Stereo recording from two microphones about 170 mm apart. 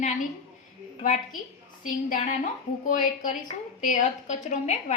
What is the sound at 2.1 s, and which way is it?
A woman's voice, 45° left (ahead or behind).